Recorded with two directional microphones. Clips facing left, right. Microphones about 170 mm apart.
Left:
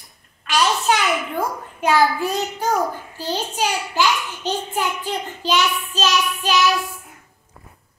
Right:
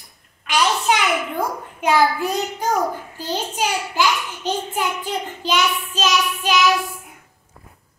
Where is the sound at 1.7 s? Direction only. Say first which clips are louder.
Even; 15° right (ahead or behind).